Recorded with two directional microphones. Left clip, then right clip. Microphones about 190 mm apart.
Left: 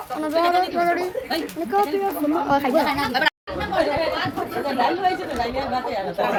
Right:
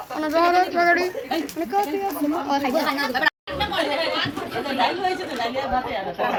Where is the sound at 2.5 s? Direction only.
20° left (ahead or behind).